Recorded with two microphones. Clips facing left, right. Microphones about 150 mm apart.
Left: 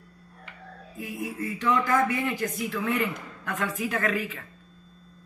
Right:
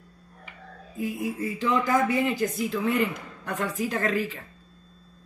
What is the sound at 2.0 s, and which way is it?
Speech, 35° right (ahead or behind).